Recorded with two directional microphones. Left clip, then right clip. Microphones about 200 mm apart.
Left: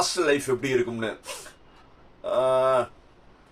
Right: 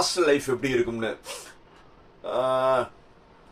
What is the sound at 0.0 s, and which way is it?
A man's voice, 15° left (ahead or behind).